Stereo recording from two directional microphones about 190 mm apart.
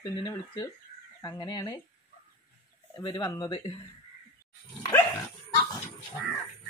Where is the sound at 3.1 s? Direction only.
20° left (ahead or behind).